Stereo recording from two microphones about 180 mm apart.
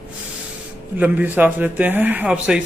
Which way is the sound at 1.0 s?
10° right (ahead or behind).